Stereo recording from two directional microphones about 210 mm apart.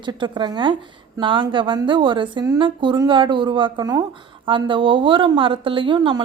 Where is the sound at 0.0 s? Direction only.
20° right (ahead or behind).